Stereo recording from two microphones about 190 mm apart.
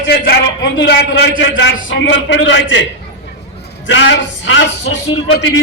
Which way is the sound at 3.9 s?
70° left (ahead or behind).